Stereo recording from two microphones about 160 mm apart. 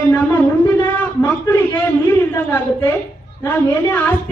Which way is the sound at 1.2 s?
20° left (ahead or behind).